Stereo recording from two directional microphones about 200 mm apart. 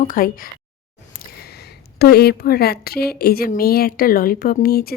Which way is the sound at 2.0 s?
50° left (ahead or behind).